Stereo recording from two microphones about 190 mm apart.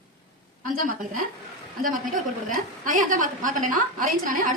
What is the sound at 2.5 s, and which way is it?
A woman's voice, 45° right (ahead or behind).